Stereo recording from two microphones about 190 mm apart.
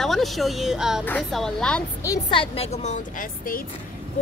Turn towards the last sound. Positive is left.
turn(degrees=45)  # may be behind; listen again after turning